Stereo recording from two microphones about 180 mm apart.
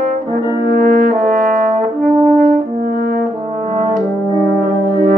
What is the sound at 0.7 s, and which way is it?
Brass instrument, 50° right (ahead or behind).